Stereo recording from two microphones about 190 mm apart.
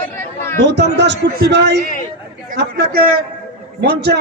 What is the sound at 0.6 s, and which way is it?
A man's voice, 65° right (ahead or behind).